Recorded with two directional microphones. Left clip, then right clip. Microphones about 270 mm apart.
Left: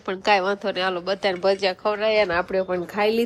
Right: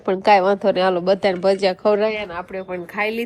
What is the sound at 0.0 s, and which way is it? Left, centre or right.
A woman's voice, centre.